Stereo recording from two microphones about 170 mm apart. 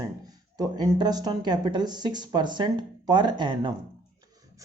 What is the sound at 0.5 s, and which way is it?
Speech, 25° right (ahead or behind).